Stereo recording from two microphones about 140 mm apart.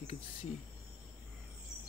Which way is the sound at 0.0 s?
50° left (ahead or behind).